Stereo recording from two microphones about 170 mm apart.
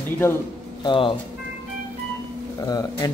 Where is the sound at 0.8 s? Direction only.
30° left (ahead or behind).